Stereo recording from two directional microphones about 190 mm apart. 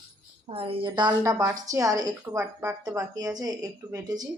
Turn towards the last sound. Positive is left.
turn(degrees=-20)  # may be behind; listen again after turning